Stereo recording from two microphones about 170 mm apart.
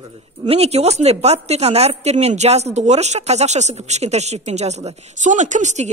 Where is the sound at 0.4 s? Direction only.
35° right (ahead or behind).